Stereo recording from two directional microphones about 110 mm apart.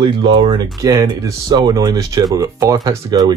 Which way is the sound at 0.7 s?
35° right (ahead or behind).